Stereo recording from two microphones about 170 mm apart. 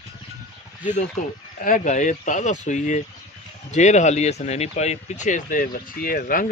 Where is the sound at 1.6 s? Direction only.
50° left (ahead or behind).